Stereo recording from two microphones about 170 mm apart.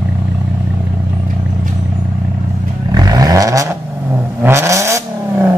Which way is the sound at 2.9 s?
20° right (ahead or behind).